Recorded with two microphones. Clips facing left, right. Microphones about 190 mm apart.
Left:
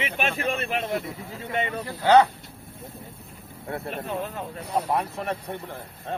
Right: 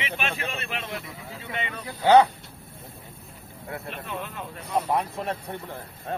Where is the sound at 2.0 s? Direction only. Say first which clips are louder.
Right 1 dB; 15° right (ahead or behind).